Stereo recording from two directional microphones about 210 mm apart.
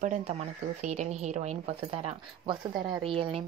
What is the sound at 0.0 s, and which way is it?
A woman's voice, 35° right (ahead or behind).